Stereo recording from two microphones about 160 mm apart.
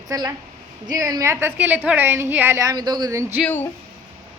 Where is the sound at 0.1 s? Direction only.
20° right (ahead or behind).